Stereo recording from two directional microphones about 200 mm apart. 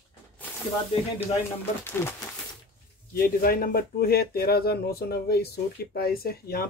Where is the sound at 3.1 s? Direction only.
50° left (ahead or behind).